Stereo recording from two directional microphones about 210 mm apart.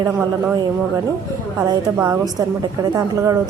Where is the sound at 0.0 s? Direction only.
15° right (ahead or behind).